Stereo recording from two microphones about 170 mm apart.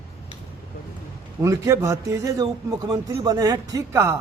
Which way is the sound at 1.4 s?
15° right (ahead or behind).